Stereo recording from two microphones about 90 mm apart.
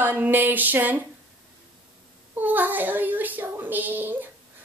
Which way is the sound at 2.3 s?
20° right (ahead or behind).